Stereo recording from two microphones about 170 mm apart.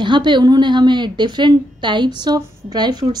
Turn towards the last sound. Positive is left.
turn(degrees=-25)  # may be behind; listen again after turning